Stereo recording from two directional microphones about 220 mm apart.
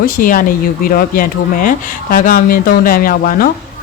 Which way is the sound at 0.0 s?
40° left (ahead or behind).